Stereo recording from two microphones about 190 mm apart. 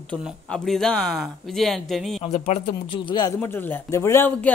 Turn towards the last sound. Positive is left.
turn(degrees=15)  # may be behind; listen again after turning